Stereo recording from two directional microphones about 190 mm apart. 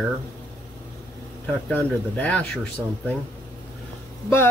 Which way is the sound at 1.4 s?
10° left (ahead or behind).